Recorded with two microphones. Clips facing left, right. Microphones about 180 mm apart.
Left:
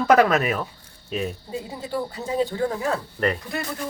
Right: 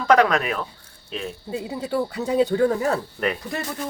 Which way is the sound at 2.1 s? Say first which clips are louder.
Right 6 dB; 70° right (ahead or behind).